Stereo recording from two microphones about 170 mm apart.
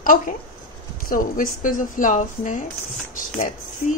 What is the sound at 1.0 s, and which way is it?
Speech, 55° left (ahead or behind).